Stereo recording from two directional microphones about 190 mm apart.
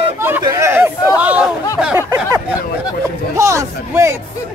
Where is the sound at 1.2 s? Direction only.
5° right (ahead or behind).